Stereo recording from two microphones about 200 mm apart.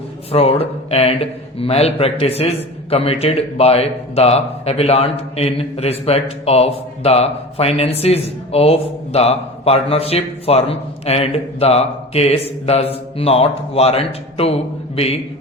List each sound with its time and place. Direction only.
0.3 s a man's voice: 30° left (ahead or behind)